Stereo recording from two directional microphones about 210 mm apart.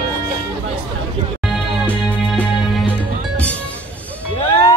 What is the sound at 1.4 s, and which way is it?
Music, centre (ahead or behind).